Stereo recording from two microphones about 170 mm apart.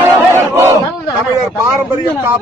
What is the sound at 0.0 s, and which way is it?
Battle cry, 15° right (ahead or behind).